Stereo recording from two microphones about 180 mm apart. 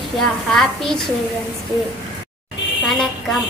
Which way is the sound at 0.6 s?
Centre (ahead or behind).